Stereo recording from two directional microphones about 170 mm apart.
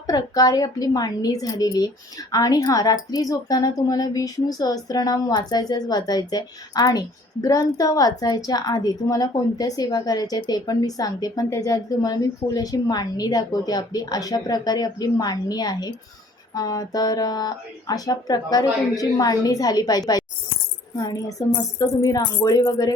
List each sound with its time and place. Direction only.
0.1 s a woman's voice: 20° left (ahead or behind)